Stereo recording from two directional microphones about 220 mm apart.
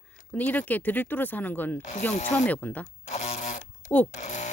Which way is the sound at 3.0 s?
30° left (ahead or behind).